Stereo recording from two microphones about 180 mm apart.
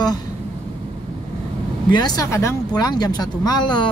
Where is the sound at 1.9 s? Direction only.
25° left (ahead or behind).